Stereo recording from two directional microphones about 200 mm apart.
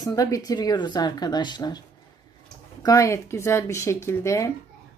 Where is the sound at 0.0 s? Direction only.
15° left (ahead or behind).